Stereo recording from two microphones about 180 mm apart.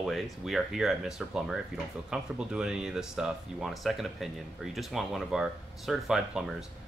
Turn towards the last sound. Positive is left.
turn(degrees=0)  # may be behind; listen again after turning